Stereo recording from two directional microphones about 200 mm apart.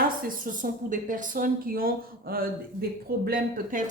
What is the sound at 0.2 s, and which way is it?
A woman's voice, 45° right (ahead or behind).